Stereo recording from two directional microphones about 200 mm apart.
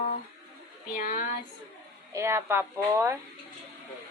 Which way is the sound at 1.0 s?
40° left (ahead or behind).